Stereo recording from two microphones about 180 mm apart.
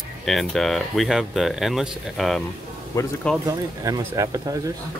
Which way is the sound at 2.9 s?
15° left (ahead or behind).